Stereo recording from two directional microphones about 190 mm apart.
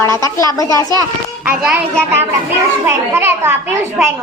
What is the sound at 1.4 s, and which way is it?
A woman's voice, 5° right (ahead or behind).